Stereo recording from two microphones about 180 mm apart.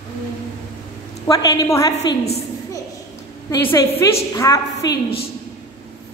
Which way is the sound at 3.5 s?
15° left (ahead or behind).